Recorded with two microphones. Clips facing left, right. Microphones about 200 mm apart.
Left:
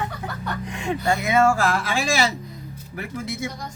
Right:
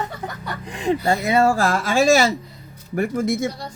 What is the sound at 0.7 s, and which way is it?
Speech, 35° right (ahead or behind).